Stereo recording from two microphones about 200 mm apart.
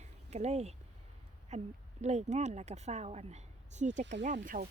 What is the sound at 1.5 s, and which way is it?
Speech, 35° right (ahead or behind).